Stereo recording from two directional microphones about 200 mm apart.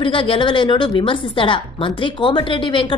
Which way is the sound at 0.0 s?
25° left (ahead or behind).